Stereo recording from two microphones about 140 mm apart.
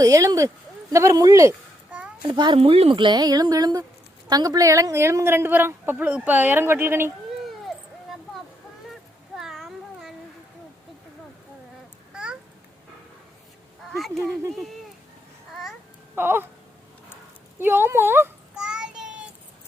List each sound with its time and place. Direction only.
0.0 s speech: 25° right (ahead or behind)
2.2 s a woman's voice: 30° right (ahead or behind); by 7.1 s 15° right (ahead or behind)
9.4 s cat: centre (ahead or behind)
12.1 s a sound: 5° right (ahead or behind)
13.9 s speech: centre (ahead or behind)
16.1 s a woman's voice: 15° right (ahead or behind)
17.6 s a woman's voice: 15° right (ahead or behind)
18.5 s child singing: 5° right (ahead or behind)